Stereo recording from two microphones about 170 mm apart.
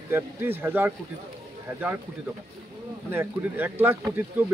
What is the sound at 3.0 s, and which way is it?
Speech, 10° right (ahead or behind).